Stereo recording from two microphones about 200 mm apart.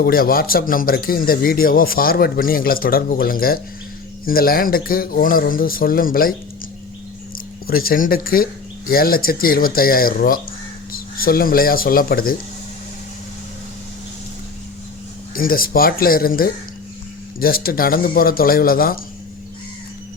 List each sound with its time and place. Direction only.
0.0 s a man's voice: 45° left (ahead or behind)
7.7 s a man's voice: 45° left (ahead or behind)
15.4 s a man's voice: 45° left (ahead or behind)